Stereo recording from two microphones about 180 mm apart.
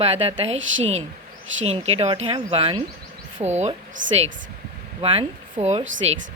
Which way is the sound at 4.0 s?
90° right.